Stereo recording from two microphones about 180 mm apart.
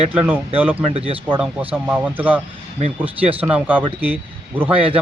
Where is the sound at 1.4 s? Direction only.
10° right (ahead or behind).